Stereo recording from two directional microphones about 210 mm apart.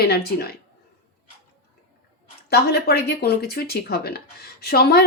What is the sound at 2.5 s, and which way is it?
A woman's voice, 50° left (ahead or behind).